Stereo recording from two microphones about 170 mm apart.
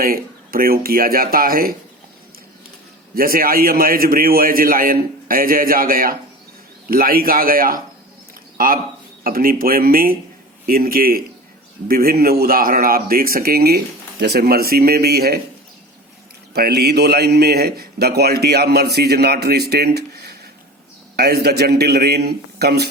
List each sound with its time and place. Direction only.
0.0 s speech: 60° right (ahead or behind)
3.2 s speech: 60° right (ahead or behind)
16.6 s a man's voice: 65° right (ahead or behind)